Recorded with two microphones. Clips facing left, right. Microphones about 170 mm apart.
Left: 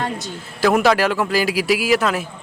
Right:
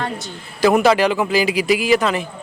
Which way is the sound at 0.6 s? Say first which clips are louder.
Right 2 dB; centre (ahead or behind).